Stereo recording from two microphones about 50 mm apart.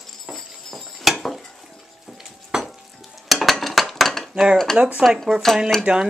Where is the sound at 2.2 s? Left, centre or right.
Centre.